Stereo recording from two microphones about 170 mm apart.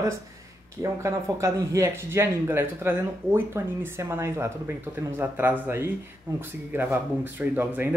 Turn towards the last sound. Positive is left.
turn(degrees=-10)  # may be behind; listen again after turning